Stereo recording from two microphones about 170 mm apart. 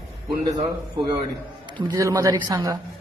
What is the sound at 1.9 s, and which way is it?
Speech, 20° right (ahead or behind).